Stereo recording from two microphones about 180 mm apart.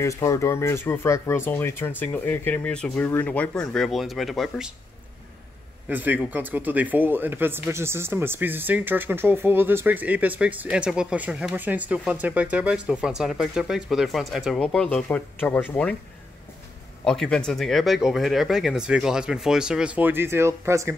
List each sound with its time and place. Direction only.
0.0 s speech: 15° left (ahead or behind); by 4.7 s centre (ahead or behind)
5.9 s speech: 10° right (ahead or behind); by 16.0 s 10° left (ahead or behind)
17.0 s speech: 5° left (ahead or behind); by 20.9 s 15° right (ahead or behind)